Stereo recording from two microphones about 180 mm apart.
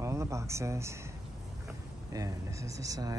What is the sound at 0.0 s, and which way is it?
Speech, 15° right (ahead or behind).